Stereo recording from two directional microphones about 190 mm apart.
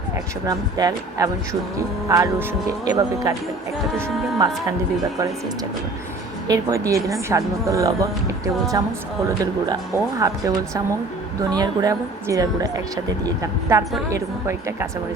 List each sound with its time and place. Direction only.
0.4 s a woman's voice: 20° right (ahead or behind)
6.5 s a woman's voice: 20° right (ahead or behind)
10.2 s a woman's voice: 15° right (ahead or behind)